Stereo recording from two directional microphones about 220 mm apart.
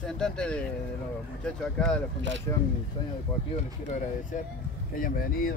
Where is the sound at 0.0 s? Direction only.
5° left (ahead or behind).